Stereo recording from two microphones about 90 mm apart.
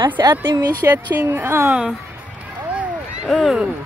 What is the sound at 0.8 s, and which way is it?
Speech, 30° right (ahead or behind).